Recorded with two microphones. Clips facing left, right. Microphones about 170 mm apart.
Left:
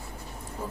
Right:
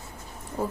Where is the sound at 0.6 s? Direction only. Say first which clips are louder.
Right 7 dB; 70° right (ahead or behind).